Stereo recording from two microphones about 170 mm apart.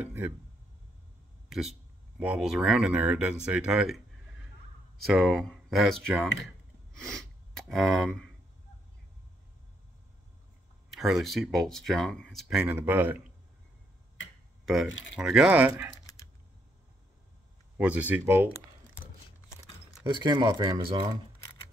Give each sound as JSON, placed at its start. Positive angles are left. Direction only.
{"t": 0.0, "sound": "speech", "side_deg": -10}
{"t": 2.1, "sound": "speech", "side_deg": -5}
{"t": 3.4, "sound": "a sound", "side_deg": -5}
{"t": 5.0, "sound": "speech", "side_deg": 0}
{"t": 6.9, "sound": "gasp", "side_deg": 5}
{"t": 11.0, "sound": "speech", "side_deg": 0}
{"t": 15.1, "sound": "speech", "side_deg": -5}
{"t": 17.7, "sound": "speech", "side_deg": -10}
{"t": 20.1, "sound": "speech", "side_deg": -25}